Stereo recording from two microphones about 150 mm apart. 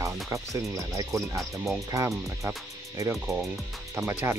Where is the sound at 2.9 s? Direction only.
20° right (ahead or behind).